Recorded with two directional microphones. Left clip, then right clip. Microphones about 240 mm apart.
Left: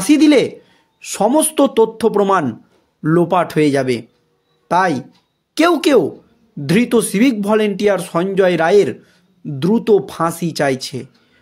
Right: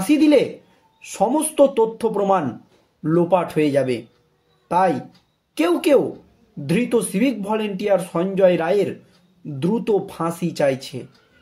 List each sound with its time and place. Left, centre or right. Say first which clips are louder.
0.1 s a man's voice: left 4 dB; left